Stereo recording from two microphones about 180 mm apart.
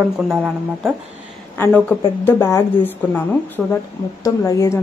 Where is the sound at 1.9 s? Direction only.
10° left (ahead or behind).